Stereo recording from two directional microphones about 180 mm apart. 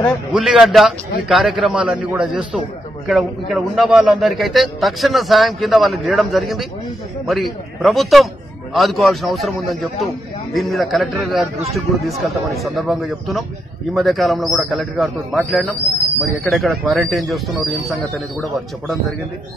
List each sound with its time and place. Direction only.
0.3 s a man's voice: 5° right (ahead or behind)